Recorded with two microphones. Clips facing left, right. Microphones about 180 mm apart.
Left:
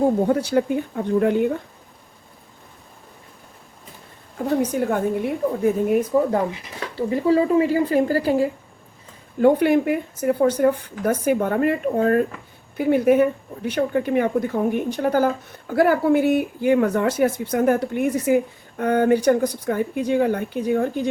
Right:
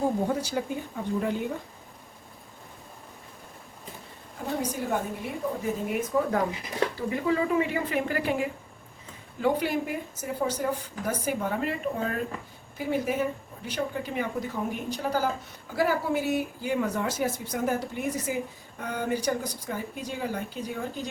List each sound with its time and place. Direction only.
0.3 s speech: 60° left (ahead or behind)
4.7 s speech: 60° left (ahead or behind)
6.1 s a woman's voice: 35° left (ahead or behind)
9.4 s speech: 55° left (ahead or behind)